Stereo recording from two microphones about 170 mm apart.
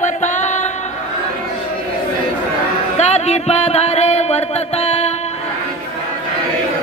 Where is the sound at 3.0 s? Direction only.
40° left (ahead or behind).